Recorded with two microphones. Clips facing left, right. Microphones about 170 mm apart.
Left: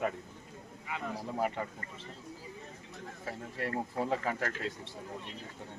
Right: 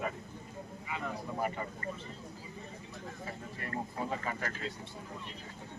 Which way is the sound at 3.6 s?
80° left.